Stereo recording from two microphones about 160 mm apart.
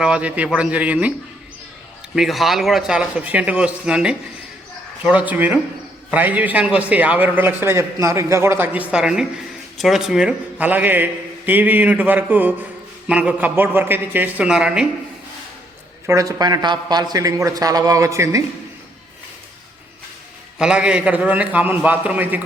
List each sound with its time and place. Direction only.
0.0 s a man's voice: 5° right (ahead or behind)
2.1 s a man's voice: centre (ahead or behind)
16.0 s speech: 20° right (ahead or behind)
20.6 s a man's voice: 5° right (ahead or behind)